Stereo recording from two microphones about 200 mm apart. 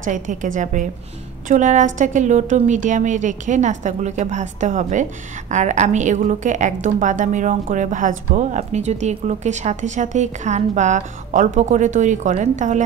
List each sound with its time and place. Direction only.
0.0 s a woman's voice: 40° right (ahead or behind)